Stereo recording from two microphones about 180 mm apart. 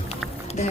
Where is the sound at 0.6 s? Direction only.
40° left (ahead or behind).